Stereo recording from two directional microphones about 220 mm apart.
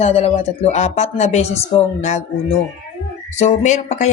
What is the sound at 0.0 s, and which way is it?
A woman's voice, 30° left (ahead or behind).